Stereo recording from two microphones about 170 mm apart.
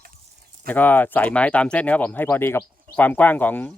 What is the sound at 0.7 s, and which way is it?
Speech, 10° left (ahead or behind).